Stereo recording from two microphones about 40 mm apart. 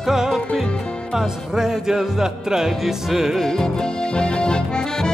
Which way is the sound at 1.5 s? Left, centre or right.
Centre.